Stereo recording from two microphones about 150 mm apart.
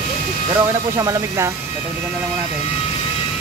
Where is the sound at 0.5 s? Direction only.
20° right (ahead or behind).